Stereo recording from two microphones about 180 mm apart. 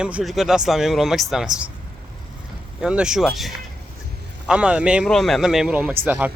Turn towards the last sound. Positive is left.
turn(degrees=-10)  # may be behind; listen again after turning